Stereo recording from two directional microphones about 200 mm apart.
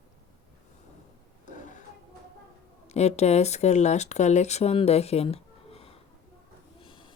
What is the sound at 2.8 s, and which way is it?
Speech, 35° left (ahead or behind).